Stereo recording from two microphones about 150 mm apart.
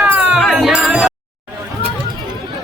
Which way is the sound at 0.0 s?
5° right (ahead or behind).